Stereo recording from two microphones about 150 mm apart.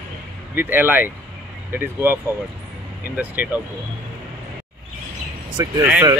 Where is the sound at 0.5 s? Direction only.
15° right (ahead or behind).